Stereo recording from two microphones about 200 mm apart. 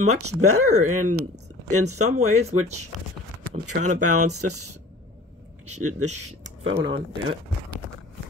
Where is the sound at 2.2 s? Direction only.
35° right (ahead or behind).